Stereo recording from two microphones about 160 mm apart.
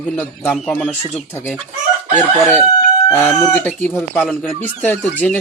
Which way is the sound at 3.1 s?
15° left (ahead or behind).